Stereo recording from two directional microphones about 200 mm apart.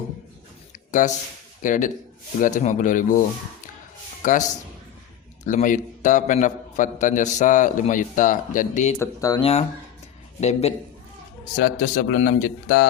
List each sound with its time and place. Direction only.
0.9 s a man's voice: 40° left (ahead or behind)
5.5 s a man's voice: 40° left (ahead or behind)
9.0 s speech: 15° left (ahead or behind)
9.4 s a man's voice: 30° left (ahead or behind)
11.4 s a man's voice: 40° left (ahead or behind)